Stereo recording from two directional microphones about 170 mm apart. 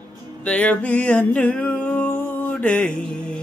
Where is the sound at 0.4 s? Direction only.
5° left (ahead or behind).